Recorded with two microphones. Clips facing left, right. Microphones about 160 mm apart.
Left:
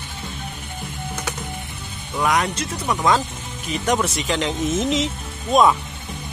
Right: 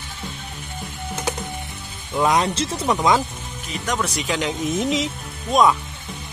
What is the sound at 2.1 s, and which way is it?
Speech, 25° right (ahead or behind).